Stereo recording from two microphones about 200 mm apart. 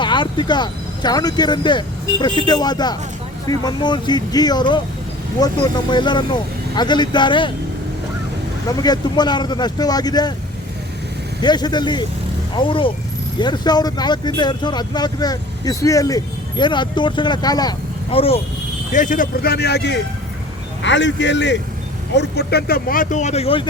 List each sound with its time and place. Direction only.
0.0 s speech: 25° left (ahead or behind)
8.7 s speech: 20° left (ahead or behind)
11.4 s speech: 20° left (ahead or behind)
18.9 s speech: 40° left (ahead or behind)